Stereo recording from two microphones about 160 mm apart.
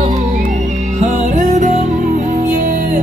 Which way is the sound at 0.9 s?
50° right (ahead or behind).